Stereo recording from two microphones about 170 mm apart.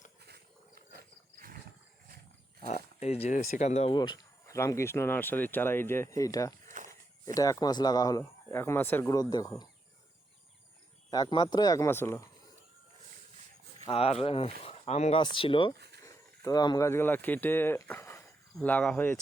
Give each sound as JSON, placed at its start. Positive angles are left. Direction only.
{"t": 0.3, "sound": "wild animals", "side_deg": -70}
{"t": 2.6, "sound": "speech", "side_deg": 40}
{"t": 3.9, "sound": "speech", "side_deg": 25}
{"t": 6.7, "sound": "a sound", "side_deg": -50}
{"t": 7.3, "sound": "speech", "side_deg": 20}
{"t": 11.1, "sound": "speech", "side_deg": 25}
{"t": 13.8, "sound": "speech", "side_deg": 35}
{"t": 16.0, "sound": "speech", "side_deg": 20}